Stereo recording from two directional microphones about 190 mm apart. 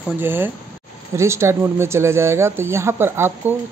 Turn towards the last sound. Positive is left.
turn(degrees=-10)  # may be behind; listen again after turning